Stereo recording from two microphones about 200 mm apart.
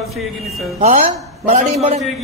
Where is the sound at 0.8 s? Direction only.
30° right (ahead or behind).